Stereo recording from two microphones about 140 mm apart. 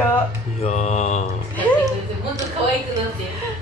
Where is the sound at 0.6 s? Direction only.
55° left (ahead or behind).